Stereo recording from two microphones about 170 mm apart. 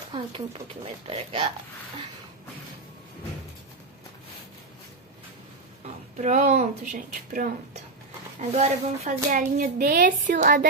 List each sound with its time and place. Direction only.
0.1 s speech: 35° right (ahead or behind)
6.1 s speech: 45° right (ahead or behind)
8.4 s speech: 40° right (ahead or behind)